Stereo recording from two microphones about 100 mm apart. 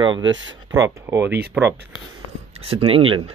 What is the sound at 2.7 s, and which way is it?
Speech, 65° right (ahead or behind).